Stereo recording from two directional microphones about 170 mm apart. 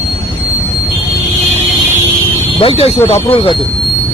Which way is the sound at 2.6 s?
35° left (ahead or behind).